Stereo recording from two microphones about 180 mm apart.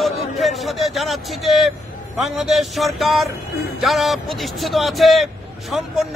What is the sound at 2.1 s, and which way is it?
Speech, centre (ahead or behind).